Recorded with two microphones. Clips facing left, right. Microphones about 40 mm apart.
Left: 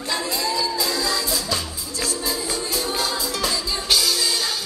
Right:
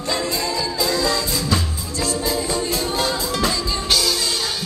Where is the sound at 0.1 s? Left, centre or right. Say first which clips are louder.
Right 2 dB; right.